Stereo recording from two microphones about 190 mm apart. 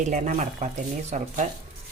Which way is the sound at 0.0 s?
40° right (ahead or behind).